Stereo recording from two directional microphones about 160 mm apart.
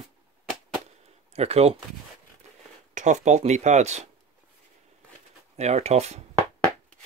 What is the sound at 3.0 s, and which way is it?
Speech, 45° right (ahead or behind).